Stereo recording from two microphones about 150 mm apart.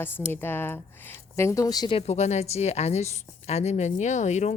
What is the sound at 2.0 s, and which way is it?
A woman's voice, 50° left (ahead or behind).